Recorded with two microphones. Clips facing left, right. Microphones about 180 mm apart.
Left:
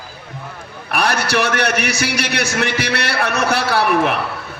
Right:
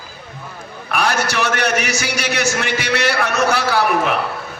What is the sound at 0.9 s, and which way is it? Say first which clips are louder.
A man's voice: left 1 dB; 60° left (ahead or behind).